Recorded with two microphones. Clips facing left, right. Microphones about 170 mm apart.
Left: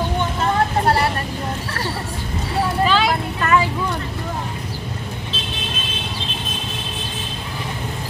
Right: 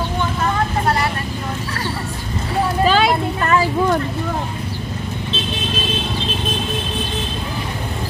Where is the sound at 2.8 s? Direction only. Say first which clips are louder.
Right 4 dB; 40° right (ahead or behind).